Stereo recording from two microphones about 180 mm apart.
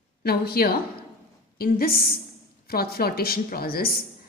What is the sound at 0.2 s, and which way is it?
A woman's voice, 60° left (ahead or behind).